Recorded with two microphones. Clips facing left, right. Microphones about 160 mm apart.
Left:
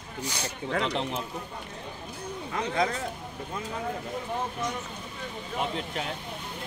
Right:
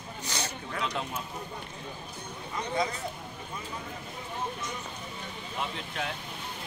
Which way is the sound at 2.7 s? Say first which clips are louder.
Left 3 dB; 60° left (ahead or behind).